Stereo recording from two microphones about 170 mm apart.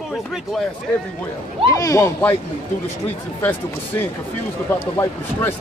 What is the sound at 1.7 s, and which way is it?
Speech, 20° left (ahead or behind).